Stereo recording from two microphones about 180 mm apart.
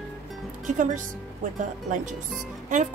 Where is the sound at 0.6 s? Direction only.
45° right (ahead or behind).